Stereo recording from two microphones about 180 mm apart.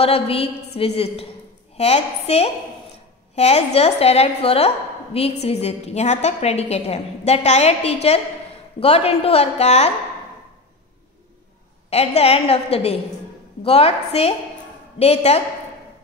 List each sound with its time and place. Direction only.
0.0 s a woman's voice: 35° left (ahead or behind)
11.9 s a woman's voice: 35° left (ahead or behind)